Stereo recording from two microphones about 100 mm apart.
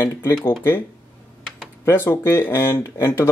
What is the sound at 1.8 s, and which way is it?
Speech, 25° left (ahead or behind).